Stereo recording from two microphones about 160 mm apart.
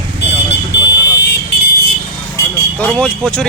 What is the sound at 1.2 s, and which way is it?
Vehicle, 90° left.